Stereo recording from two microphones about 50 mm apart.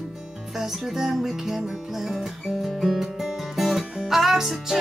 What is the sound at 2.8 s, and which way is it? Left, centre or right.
Music, centre.